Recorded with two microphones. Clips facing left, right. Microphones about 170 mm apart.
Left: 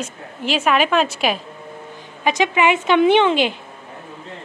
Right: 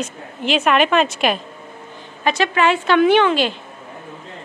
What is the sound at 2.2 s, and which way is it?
Speech, 15° left (ahead or behind).